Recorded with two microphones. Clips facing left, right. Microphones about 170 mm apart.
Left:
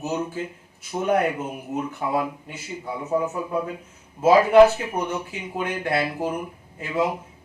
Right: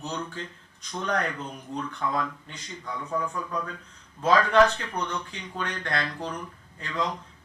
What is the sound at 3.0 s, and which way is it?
Speech, 25° left (ahead or behind).